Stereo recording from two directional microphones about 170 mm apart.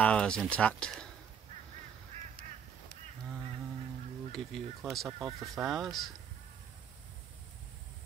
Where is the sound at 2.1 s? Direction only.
40° right (ahead or behind).